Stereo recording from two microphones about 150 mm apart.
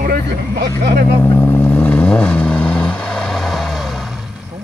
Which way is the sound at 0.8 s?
90° right.